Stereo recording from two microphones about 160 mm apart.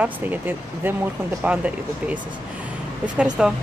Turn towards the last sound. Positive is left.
turn(degrees=-5)  # may be behind; listen again after turning